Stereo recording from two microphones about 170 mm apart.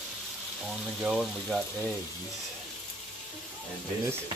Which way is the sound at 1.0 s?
Centre (ahead or behind).